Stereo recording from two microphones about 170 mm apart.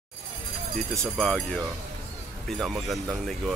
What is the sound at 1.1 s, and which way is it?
Speech, 5° left (ahead or behind).